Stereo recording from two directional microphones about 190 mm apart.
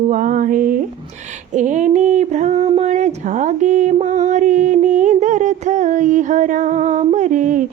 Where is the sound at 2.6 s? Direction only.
35° right (ahead or behind).